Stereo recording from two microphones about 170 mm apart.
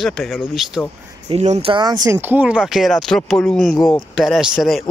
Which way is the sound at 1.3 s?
40° right (ahead or behind).